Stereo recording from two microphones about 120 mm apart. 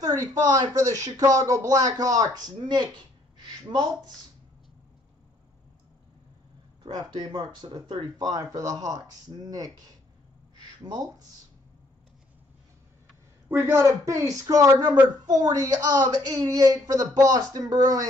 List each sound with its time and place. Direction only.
0.0 s speech: 30° right (ahead or behind)
6.8 s speech: 35° right (ahead or behind)
13.5 s speech: 20° right (ahead or behind)